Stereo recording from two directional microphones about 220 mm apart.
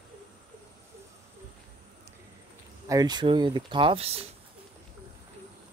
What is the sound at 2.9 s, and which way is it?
Speech, 20° right (ahead or behind).